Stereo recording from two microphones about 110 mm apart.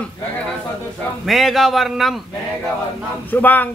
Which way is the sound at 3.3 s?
15° left (ahead or behind).